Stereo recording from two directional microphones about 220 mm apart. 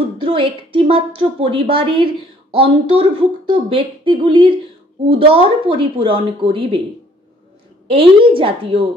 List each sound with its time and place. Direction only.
0.2 s a woman's voice: 25° right (ahead or behind)
7.9 s a woman's voice: 25° right (ahead or behind)